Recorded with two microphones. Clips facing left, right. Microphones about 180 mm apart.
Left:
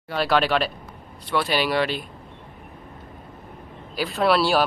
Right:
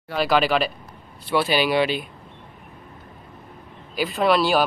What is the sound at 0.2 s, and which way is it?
Speech, centre (ahead or behind).